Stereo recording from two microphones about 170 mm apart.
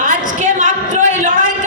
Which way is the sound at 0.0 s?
50° right (ahead or behind).